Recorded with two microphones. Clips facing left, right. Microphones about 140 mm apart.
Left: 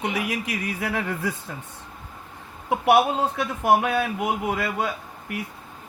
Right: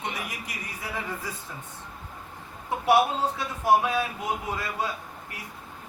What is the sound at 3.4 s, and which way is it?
Speech, 65° left (ahead or behind).